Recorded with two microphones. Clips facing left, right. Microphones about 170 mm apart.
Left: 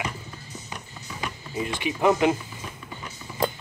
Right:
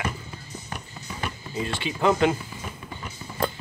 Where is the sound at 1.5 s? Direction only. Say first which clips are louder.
Left 2 dB; 20° left (ahead or behind).